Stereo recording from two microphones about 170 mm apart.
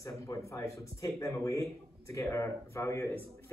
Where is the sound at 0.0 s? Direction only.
20° left (ahead or behind).